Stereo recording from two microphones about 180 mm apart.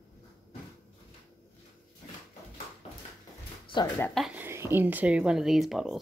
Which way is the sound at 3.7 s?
25° left (ahead or behind).